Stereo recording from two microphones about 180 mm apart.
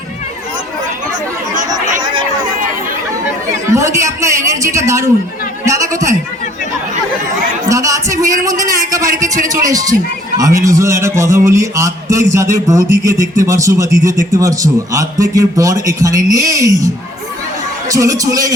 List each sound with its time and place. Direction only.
3.7 s a man's voice: 15° right (ahead or behind)
7.7 s a man's voice: 15° right (ahead or behind)